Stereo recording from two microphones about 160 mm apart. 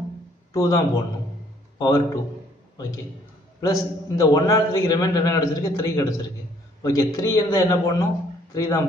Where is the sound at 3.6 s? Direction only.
20° left (ahead or behind).